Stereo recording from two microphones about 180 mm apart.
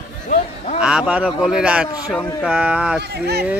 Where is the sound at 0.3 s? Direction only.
40° left (ahead or behind).